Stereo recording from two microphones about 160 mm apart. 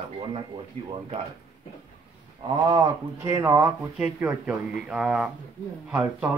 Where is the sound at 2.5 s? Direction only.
30° right (ahead or behind).